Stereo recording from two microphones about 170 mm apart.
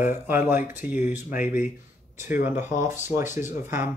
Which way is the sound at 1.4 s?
60° left (ahead or behind).